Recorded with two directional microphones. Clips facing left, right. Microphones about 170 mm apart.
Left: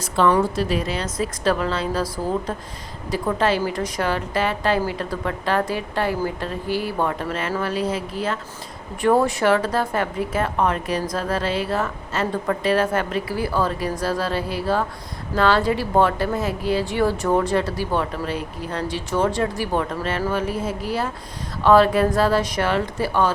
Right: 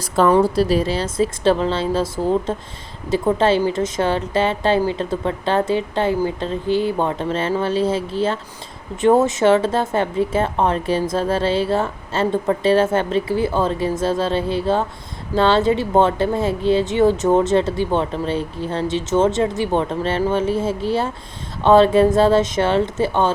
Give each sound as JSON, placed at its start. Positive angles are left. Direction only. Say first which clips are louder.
{"t": 0.0, "sound": "a woman's voice", "louder": "right 4 dB", "side_deg": -30}